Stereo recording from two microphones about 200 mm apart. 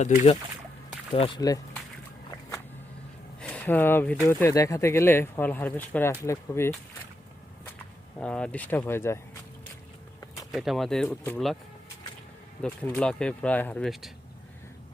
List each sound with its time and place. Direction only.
1.1 s speech: 25° left (ahead or behind)
3.4 s speech: 5° left (ahead or behind)
8.2 s speech: 5° left (ahead or behind)
10.5 s speech: centre (ahead or behind)
12.6 s speech: 5° left (ahead or behind)